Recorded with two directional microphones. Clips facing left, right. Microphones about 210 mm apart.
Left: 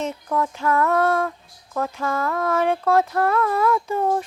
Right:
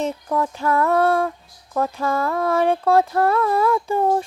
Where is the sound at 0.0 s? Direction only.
30° right (ahead or behind).